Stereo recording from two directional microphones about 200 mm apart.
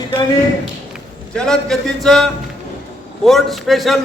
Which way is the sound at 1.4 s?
5° left (ahead or behind).